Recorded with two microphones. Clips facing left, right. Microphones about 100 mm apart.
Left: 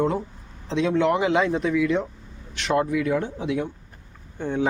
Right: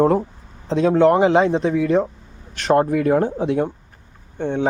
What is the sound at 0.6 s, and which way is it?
Speech, 40° right (ahead or behind).